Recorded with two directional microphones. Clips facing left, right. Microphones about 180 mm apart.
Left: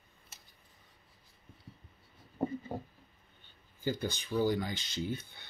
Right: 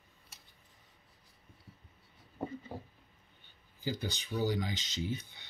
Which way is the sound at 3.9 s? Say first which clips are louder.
Left 3 dB; 50° left (ahead or behind).